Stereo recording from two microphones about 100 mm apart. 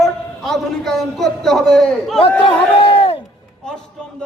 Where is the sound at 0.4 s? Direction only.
5° left (ahead or behind).